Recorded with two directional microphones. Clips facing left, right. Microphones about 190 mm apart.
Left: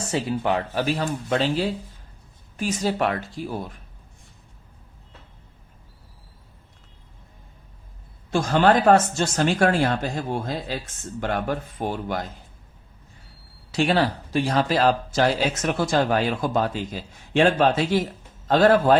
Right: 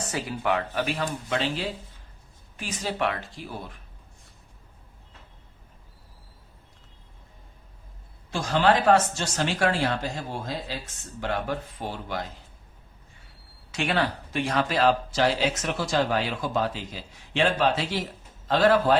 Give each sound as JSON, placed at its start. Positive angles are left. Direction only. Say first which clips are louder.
{"t": 0.1, "sound": "speech", "louder": "left 4 dB", "side_deg": 30}
{"t": 8.3, "sound": "speech", "louder": "left 4 dB", "side_deg": 50}
{"t": 13.7, "sound": "speech", "louder": "left 5 dB", "side_deg": 35}